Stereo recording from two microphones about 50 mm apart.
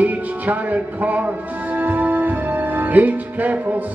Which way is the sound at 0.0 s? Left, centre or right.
Right.